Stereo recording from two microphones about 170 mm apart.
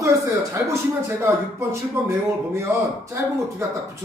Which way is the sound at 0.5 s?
15° right (ahead or behind).